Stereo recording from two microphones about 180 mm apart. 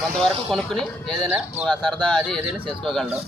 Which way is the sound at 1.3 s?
10° right (ahead or behind).